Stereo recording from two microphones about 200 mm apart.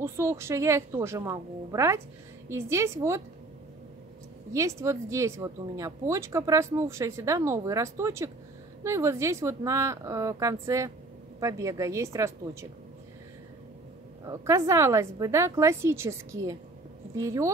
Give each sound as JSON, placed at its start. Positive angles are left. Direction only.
{"t": 0.0, "sound": "speech", "side_deg": -15}
{"t": 4.6, "sound": "speech", "side_deg": -15}
{"t": 14.2, "sound": "speech", "side_deg": -15}